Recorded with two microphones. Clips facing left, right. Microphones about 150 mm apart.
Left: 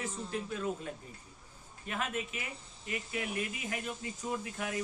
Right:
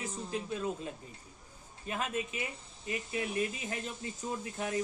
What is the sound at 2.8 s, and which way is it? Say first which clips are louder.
Speech: right 2 dB; 30° right (ahead or behind).